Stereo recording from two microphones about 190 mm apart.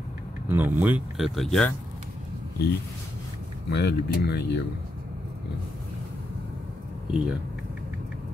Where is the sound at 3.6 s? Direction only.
60° left (ahead or behind).